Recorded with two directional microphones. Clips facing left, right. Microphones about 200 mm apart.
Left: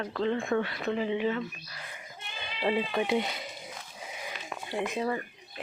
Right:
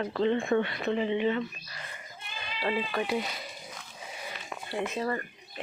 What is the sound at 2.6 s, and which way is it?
Speech, 20° left (ahead or behind).